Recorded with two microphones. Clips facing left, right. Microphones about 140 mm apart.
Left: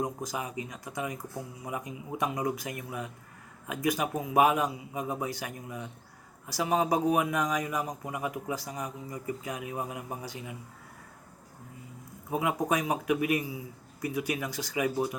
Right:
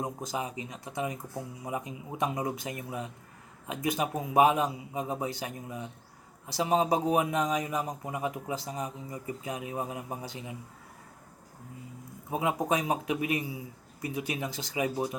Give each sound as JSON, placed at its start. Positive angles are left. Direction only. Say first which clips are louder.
{"t": 0.0, "sound": "a man's voice", "louder": "left 1 dB", "side_deg": -30}
{"t": 12.3, "sound": "a man's voice", "louder": "even", "side_deg": -25}